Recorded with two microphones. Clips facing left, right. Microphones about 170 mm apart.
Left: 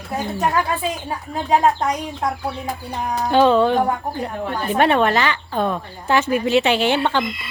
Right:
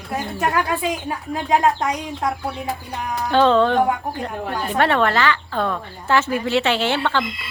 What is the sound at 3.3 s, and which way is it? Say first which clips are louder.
Speech: left 1 dB; 10° left (ahead or behind).